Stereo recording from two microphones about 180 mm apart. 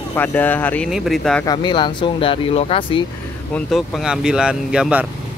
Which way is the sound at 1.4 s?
25° left (ahead or behind).